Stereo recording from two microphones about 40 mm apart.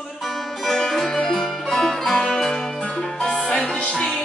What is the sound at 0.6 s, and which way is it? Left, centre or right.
Music, centre.